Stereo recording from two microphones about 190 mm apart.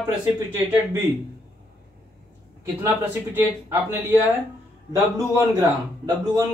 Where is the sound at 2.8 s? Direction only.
10° right (ahead or behind).